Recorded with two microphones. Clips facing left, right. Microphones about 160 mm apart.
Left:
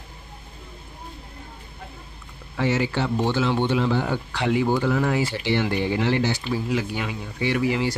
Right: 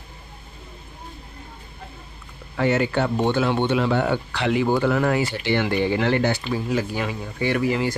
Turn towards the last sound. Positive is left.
turn(degrees=-45)  # may be behind; listen again after turning